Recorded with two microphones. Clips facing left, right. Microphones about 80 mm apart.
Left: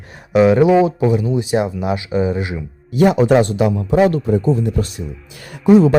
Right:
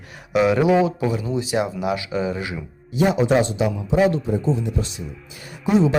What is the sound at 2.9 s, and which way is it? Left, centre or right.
A man's voice, left.